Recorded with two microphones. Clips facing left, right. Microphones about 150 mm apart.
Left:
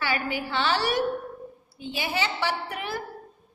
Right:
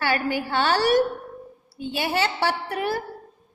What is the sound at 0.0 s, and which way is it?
A woman's voice, 45° right (ahead or behind).